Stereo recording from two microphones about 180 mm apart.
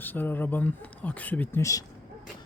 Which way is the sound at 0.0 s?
10° left (ahead or behind).